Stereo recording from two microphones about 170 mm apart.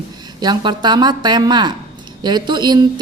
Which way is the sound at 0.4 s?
25° right (ahead or behind).